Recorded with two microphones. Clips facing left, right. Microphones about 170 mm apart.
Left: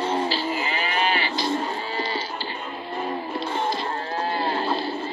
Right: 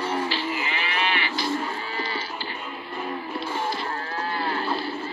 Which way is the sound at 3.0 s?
35° left (ahead or behind).